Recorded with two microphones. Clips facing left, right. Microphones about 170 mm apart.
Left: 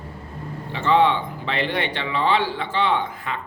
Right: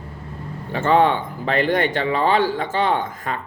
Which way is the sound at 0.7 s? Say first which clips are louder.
Right 2 dB; 45° right (ahead or behind).